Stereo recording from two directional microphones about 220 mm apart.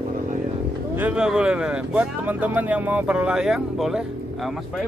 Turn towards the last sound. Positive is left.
turn(degrees=0)  # may be behind; listen again after turning